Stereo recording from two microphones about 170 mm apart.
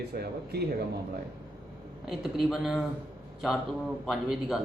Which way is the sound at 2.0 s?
Centre (ahead or behind).